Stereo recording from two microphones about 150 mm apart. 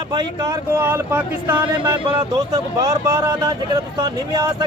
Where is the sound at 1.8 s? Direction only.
35° right (ahead or behind).